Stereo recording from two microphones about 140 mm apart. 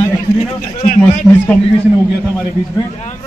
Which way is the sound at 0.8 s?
65° left (ahead or behind).